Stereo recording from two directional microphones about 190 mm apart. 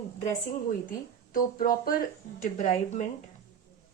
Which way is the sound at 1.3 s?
50° left (ahead or behind).